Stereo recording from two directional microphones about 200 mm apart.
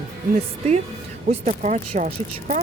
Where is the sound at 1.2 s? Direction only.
35° right (ahead or behind).